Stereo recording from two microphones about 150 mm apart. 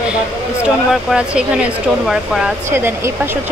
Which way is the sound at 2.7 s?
15° right (ahead or behind).